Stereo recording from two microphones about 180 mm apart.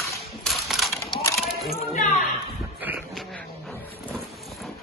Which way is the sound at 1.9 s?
45° left (ahead or behind).